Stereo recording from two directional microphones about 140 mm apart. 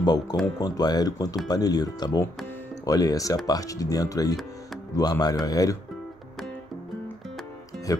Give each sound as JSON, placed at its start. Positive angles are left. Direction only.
{"t": 0.0, "sound": "speech", "side_deg": 30}
{"t": 7.9, "sound": "speech", "side_deg": 25}